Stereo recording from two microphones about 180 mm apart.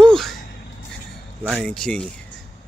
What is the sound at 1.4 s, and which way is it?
Speech, centre (ahead or behind).